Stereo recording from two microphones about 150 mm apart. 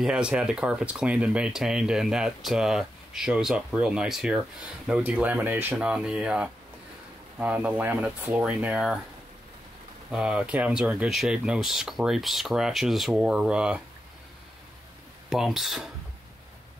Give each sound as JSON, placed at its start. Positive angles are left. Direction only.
{"t": 0.0, "sound": "speech", "side_deg": -5}
{"t": 10.1, "sound": "speech", "side_deg": -5}
{"t": 15.2, "sound": "speech", "side_deg": 0}